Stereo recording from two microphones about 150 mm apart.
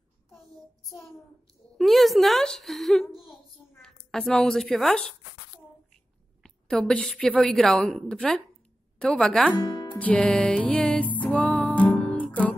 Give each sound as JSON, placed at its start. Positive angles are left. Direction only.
{"t": 1.8, "sound": "a woman's voice", "side_deg": 0}
{"t": 3.2, "sound": "a sound", "side_deg": 0}
{"t": 6.4, "sound": "a woman's voice", "side_deg": 5}
{"t": 9.6, "sound": "speech", "side_deg": 30}
{"t": 9.9, "sound": "music", "side_deg": 10}